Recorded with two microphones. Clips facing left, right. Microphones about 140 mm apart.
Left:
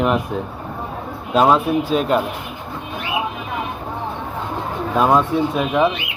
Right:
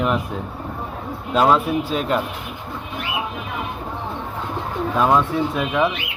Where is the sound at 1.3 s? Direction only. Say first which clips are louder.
Left 2 dB; 10° left (ahead or behind).